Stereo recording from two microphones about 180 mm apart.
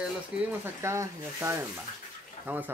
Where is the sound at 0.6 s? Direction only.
15° right (ahead or behind).